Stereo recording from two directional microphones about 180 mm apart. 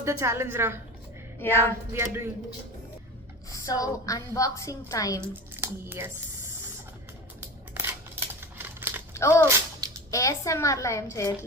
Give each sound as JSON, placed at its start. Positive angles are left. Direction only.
{"t": 0.0, "sound": "a woman's voice", "side_deg": -15}
{"t": 1.4, "sound": "a woman's voice", "side_deg": 10}
{"t": 1.9, "sound": "a woman's voice", "side_deg": -15}
{"t": 3.5, "sound": "a woman's voice", "side_deg": 20}
{"t": 5.3, "sound": "speech", "side_deg": -10}
{"t": 7.7, "sound": "scissors", "side_deg": -10}
{"t": 9.1, "sound": "a woman's voice", "side_deg": 15}